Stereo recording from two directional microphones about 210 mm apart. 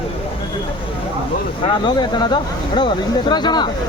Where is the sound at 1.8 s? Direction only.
20° left (ahead or behind).